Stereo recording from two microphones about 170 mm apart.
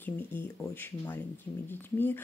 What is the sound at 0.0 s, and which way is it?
Speech, 10° left (ahead or behind).